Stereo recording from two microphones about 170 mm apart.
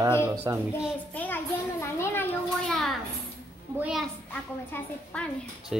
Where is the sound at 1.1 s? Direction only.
10° left (ahead or behind).